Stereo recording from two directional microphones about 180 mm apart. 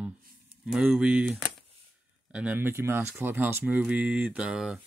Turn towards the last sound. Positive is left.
turn(degrees=0)  # may be behind; listen again after turning